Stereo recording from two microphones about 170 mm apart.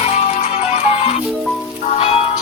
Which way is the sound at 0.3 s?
45° left (ahead or behind).